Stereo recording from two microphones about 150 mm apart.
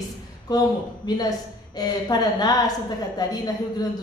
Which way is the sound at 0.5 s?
25° left (ahead or behind).